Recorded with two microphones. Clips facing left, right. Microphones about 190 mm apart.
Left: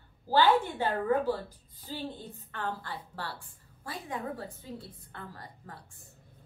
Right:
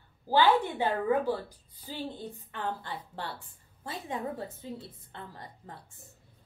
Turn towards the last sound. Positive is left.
turn(degrees=-20)  # may be behind; listen again after turning